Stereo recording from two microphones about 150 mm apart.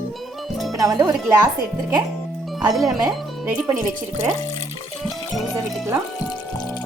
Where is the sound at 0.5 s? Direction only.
Centre (ahead or behind).